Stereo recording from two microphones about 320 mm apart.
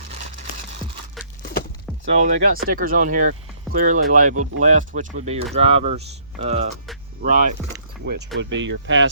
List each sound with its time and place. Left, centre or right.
2.2 s speech: right